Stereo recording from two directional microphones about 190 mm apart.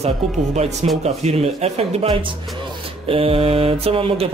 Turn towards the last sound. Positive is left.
turn(degrees=-30)  # may be behind; listen again after turning